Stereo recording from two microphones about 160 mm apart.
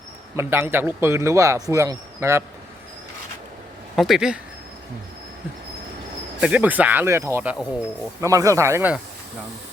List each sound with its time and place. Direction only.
0.3 s speech: 15° right (ahead or behind)
3.9 s speech: centre (ahead or behind)
6.4 s speech: 10° right (ahead or behind)